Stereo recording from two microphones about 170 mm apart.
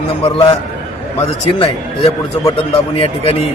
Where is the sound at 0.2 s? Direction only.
30° left (ahead or behind).